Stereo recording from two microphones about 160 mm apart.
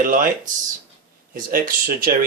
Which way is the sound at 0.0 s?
55° right (ahead or behind).